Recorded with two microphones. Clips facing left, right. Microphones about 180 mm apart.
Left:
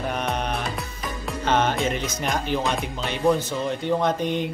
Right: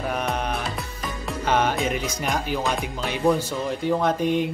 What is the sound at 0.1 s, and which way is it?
Music, 5° right (ahead or behind).